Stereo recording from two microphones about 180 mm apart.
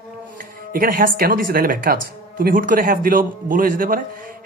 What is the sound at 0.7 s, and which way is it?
Speech, 55° right (ahead or behind).